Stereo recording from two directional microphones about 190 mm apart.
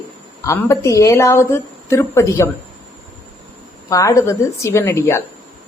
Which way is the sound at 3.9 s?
15° left (ahead or behind).